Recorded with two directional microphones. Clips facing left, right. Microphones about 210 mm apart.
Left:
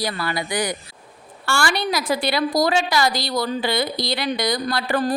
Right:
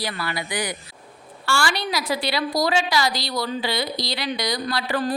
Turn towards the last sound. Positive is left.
turn(degrees=50)  # may be behind; listen again after turning